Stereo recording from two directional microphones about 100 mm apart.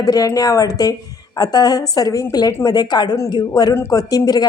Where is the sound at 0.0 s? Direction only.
35° left (ahead or behind).